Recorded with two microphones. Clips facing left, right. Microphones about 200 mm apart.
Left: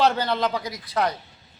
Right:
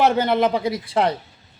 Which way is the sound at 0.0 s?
20° right (ahead or behind).